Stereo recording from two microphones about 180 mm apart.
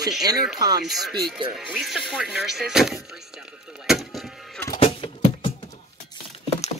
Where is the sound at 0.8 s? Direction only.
Centre (ahead or behind).